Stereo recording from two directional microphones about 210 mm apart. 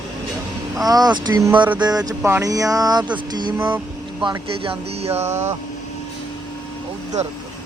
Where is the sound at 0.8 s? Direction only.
20° right (ahead or behind).